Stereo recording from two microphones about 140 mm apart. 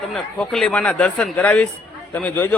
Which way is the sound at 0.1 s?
5° left (ahead or behind).